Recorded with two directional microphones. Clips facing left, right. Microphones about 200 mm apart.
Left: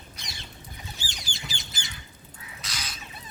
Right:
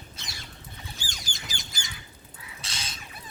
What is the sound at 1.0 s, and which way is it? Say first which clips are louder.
Squawk: left 1 dB; 45° right (ahead or behind).